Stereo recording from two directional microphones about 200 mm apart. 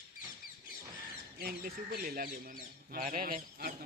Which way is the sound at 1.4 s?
50° right (ahead or behind).